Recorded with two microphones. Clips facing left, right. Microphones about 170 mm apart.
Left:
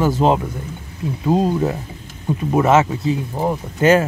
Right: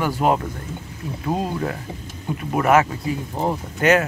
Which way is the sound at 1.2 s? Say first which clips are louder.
Left 7 dB; 25° left (ahead or behind).